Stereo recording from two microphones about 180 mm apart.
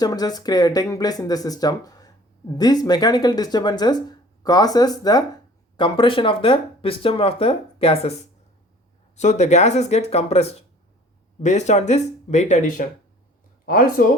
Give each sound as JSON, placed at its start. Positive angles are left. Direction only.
{"t": 0.0, "sound": "speech", "side_deg": 20}
{"t": 9.1, "sound": "speech", "side_deg": 40}